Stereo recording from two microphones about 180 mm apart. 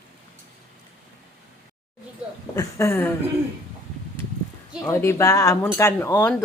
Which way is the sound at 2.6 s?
15° left (ahead or behind).